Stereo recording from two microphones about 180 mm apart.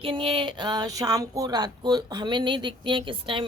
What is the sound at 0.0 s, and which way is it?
A woman's voice, 30° right (ahead or behind).